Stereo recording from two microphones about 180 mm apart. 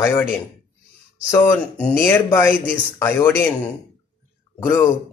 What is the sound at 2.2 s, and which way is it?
Speech, 15° left (ahead or behind).